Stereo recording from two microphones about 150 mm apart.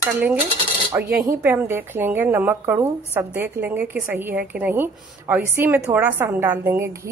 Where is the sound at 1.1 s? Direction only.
70° right (ahead or behind).